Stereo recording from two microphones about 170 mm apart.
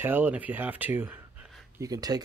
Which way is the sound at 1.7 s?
20° right (ahead or behind).